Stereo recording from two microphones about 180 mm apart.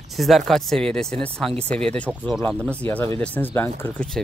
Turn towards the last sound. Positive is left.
turn(degrees=5)  # may be behind; listen again after turning